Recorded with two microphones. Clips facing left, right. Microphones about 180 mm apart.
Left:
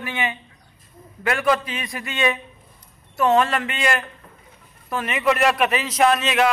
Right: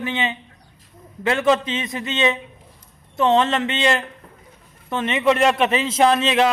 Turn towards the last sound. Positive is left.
turn(degrees=-30)  # may be behind; listen again after turning